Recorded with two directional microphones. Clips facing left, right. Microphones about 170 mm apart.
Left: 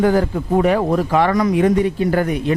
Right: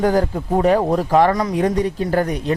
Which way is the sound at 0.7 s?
15° right (ahead or behind).